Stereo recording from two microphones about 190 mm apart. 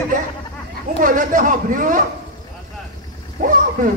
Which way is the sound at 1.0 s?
45° right (ahead or behind).